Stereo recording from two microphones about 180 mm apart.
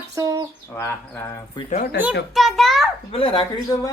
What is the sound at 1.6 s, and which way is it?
Speech, 25° left (ahead or behind).